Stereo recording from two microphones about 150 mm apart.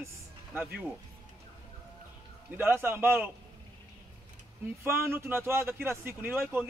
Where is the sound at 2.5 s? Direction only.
15° right (ahead or behind).